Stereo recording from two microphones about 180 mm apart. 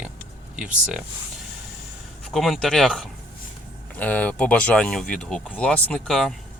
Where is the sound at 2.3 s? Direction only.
Centre (ahead or behind).